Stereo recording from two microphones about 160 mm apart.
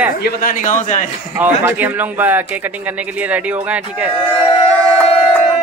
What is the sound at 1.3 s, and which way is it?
Speech, 10° right (ahead or behind).